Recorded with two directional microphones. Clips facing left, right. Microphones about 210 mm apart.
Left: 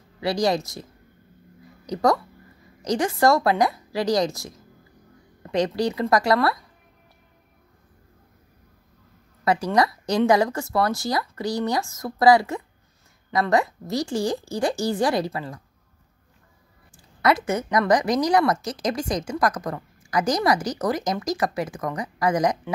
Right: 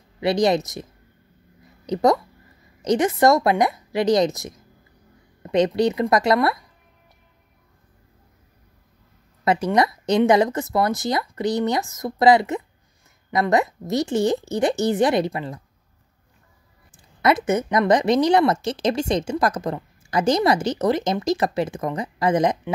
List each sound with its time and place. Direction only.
0.2 s a woman's voice: 20° right (ahead or behind)
1.9 s a woman's voice: 20° right (ahead or behind)
9.4 s a woman's voice: 20° right (ahead or behind)
16.9 s a woman's voice: 20° right (ahead or behind)